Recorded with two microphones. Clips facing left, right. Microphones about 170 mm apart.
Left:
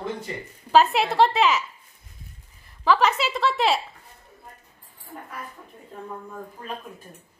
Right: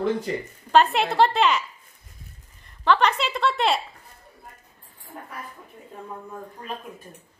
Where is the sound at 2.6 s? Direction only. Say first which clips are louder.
Even; 5° left (ahead or behind).